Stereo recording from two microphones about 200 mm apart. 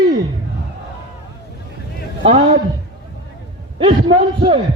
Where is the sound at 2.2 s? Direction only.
30° right (ahead or behind).